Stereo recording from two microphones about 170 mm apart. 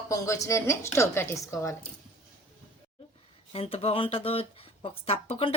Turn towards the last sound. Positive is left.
turn(degrees=35)  # may be behind; listen again after turning